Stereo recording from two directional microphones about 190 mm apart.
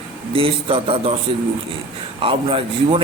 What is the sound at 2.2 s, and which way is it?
Speech, 30° right (ahead or behind).